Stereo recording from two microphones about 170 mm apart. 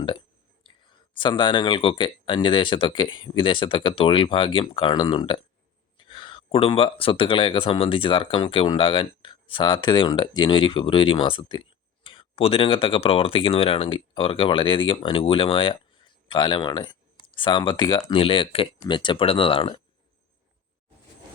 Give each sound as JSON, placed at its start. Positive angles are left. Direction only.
{"t": 0.8, "sound": "speech", "side_deg": 25}